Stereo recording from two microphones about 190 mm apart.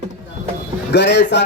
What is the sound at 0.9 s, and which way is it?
Speech, 65° left (ahead or behind).